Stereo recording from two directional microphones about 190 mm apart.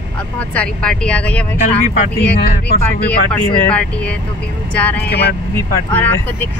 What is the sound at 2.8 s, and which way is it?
Speech, 10° left (ahead or behind).